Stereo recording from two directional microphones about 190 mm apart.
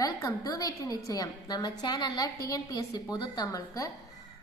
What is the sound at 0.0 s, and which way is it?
A woman's voice, 20° left (ahead or behind).